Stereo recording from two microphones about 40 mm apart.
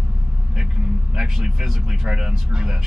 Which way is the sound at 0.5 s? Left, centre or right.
Centre.